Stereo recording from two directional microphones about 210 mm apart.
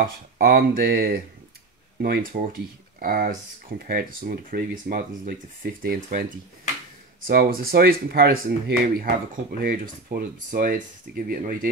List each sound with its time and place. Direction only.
0.0 s speech: 45° right (ahead or behind)
7.2 s speech: 45° right (ahead or behind)